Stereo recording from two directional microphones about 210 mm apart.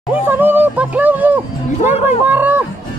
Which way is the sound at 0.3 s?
10° right (ahead or behind).